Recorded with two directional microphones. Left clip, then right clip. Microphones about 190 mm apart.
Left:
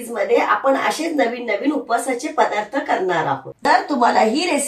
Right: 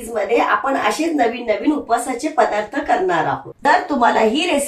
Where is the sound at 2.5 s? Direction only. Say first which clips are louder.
Right 2 dB; 10° right (ahead or behind).